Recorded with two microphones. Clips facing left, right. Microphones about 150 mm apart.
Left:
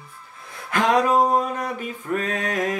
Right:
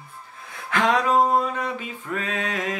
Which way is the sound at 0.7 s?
40° left (ahead or behind).